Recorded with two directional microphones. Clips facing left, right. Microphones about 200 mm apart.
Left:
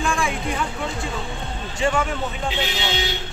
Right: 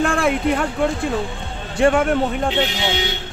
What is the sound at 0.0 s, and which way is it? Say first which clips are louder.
Speech: right 6 dB; 60° right (ahead or behind).